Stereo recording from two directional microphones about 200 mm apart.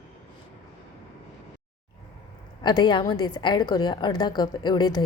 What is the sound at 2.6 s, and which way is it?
A woman's voice, 25° left (ahead or behind).